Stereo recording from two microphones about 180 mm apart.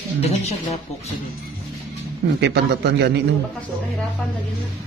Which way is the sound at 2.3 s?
70° right (ahead or behind).